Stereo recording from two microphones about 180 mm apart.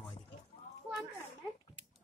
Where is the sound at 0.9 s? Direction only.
20° right (ahead or behind).